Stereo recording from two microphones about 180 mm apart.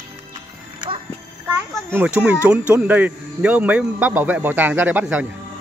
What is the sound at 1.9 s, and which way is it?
Speech, 5° right (ahead or behind).